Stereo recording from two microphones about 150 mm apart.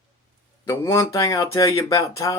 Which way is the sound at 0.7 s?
20° left (ahead or behind).